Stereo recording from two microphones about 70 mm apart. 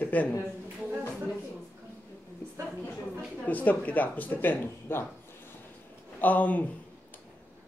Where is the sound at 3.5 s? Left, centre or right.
Left.